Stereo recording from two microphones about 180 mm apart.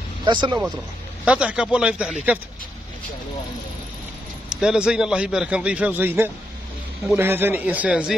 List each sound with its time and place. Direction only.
0.2 s speech: 25° right (ahead or behind)
1.2 s a man's voice: 5° right (ahead or behind)
4.5 s a man's voice: 5° right (ahead or behind)